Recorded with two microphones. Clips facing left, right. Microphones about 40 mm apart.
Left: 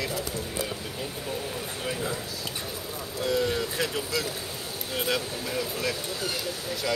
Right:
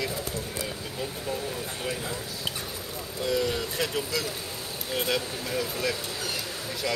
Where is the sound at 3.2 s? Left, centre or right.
Centre.